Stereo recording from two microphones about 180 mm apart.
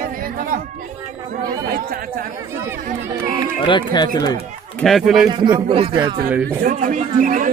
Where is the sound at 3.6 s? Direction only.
25° left (ahead or behind).